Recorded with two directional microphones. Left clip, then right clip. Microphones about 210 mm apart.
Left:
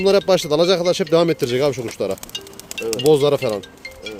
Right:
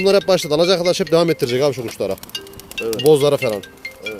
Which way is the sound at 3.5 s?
20° right (ahead or behind).